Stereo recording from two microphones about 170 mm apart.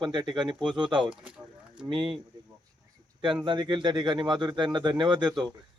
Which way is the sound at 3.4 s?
25° right (ahead or behind).